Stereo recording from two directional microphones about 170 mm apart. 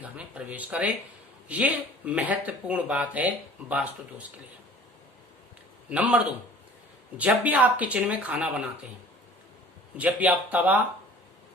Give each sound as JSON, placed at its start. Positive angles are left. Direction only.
{"t": 0.0, "sound": "a sound", "side_deg": -10}
{"t": 1.5, "sound": "speech", "side_deg": -10}
{"t": 5.9, "sound": "speech", "side_deg": -10}
{"t": 7.2, "sound": "speech", "side_deg": -10}
{"t": 10.0, "sound": "speech", "side_deg": -10}